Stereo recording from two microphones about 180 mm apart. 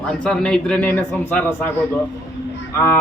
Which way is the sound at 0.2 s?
5° left (ahead or behind).